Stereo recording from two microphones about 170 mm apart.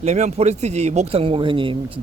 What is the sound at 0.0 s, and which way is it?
Speech, 40° right (ahead or behind).